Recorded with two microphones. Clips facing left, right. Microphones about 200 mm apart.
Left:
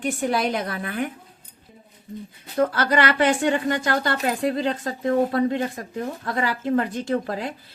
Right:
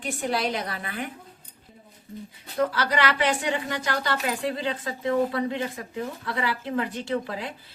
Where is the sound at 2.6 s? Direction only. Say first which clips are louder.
Left 4 dB; 50° left (ahead or behind).